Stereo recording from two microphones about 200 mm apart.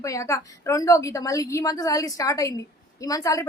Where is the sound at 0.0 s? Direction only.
15° left (ahead or behind).